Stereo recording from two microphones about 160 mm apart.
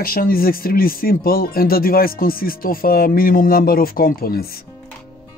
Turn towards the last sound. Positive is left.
turn(degrees=70)  # may be behind; listen again after turning